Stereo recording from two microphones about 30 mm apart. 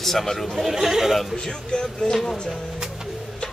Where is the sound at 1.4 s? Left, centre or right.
Left.